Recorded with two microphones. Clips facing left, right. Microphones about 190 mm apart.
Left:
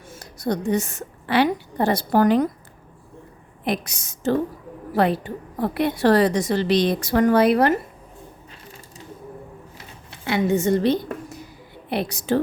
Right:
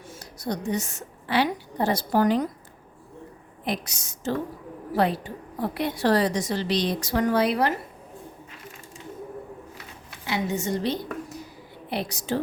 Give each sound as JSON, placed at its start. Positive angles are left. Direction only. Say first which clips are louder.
{"t": 0.2, "sound": "a woman's voice", "louder": "left 6 dB", "side_deg": 55}
{"t": 3.6, "sound": "a woman's voice", "louder": "left 4 dB", "side_deg": 60}
{"t": 10.2, "sound": "a woman's voice", "louder": "left 7 dB", "side_deg": 60}